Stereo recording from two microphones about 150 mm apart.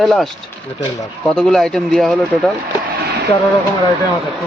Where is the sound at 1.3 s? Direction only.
5° left (ahead or behind).